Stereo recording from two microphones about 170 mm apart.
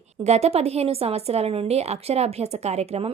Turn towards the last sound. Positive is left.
turn(degrees=-40)  # may be behind; listen again after turning